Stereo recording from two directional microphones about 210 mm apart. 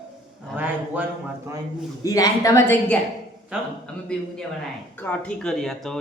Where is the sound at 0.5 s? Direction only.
10° right (ahead or behind).